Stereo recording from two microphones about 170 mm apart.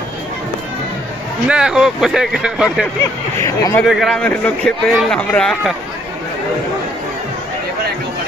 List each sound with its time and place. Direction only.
1.5 s a man's voice: 5° right (ahead or behind)
3.3 s speech: 20° left (ahead or behind)
3.8 s a man's voice: centre (ahead or behind)